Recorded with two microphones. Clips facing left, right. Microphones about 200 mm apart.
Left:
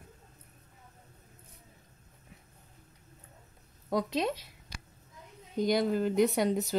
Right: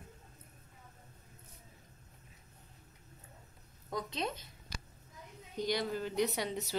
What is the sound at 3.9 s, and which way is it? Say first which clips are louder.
Speech: left 8 dB; 75° left (ahead or behind).